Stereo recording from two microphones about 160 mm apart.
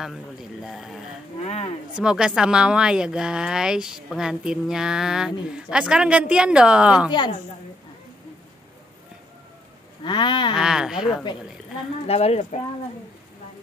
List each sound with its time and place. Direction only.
0.0 s speech: centre (ahead or behind)
1.4 s speech: 45° left (ahead or behind)
2.0 s speech: 5° right (ahead or behind)
7.1 s a sound: 30° left (ahead or behind)
10.0 s a sound: 30° left (ahead or behind)
10.5 s speech: 5° right (ahead or behind)
12.1 s speech: 40° left (ahead or behind)